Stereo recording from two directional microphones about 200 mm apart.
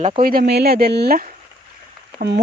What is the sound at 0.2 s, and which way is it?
Speech, 45° right (ahead or behind).